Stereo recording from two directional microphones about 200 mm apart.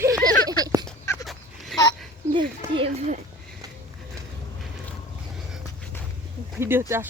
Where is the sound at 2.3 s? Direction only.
25° right (ahead or behind).